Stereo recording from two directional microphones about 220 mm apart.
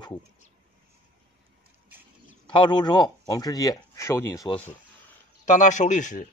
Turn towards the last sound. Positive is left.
turn(degrees=35)  # may be behind; listen again after turning